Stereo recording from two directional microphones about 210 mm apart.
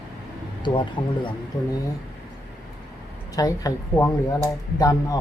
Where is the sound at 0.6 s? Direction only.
20° left (ahead or behind).